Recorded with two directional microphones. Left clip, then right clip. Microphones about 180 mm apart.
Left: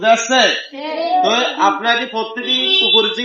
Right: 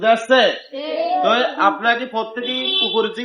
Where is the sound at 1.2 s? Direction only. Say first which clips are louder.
Left 1 dB; centre (ahead or behind).